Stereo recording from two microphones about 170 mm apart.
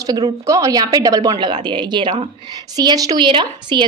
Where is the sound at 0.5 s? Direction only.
20° right (ahead or behind).